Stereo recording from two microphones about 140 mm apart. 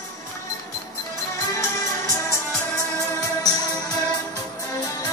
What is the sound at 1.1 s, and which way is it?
Music, 20° left (ahead or behind).